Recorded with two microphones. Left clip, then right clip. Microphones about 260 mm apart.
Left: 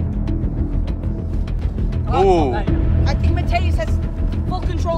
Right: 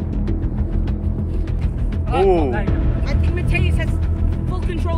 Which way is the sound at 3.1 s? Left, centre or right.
Left.